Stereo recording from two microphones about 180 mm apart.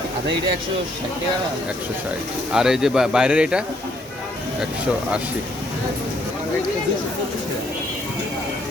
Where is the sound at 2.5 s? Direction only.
5° right (ahead or behind).